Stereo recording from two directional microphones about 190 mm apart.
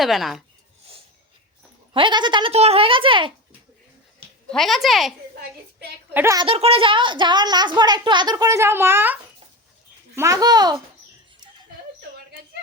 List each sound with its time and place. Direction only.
0.0 s speech: centre (ahead or behind)
1.9 s a child's voice: 25° right (ahead or behind)
4.4 s speech: centre (ahead or behind)
6.1 s a woman's voice: 15° right (ahead or behind)
6.4 s a child's voice: 30° right (ahead or behind); by 9.1 s 10° right (ahead or behind)
10.2 s a child's voice: 15° right (ahead or behind)